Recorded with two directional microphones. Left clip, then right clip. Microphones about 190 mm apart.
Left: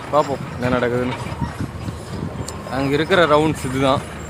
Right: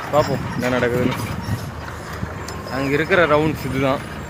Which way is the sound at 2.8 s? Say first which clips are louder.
Left 1 dB; 20° left (ahead or behind).